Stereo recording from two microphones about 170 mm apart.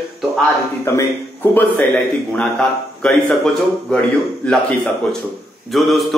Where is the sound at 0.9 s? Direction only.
15° left (ahead or behind).